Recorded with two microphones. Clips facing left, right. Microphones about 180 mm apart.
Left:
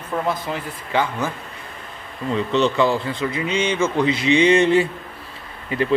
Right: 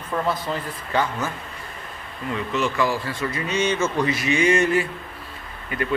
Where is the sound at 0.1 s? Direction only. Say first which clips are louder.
Left 1 dB; 15° left (ahead or behind).